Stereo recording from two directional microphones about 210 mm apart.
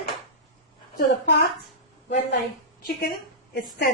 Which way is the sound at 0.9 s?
50° left (ahead or behind).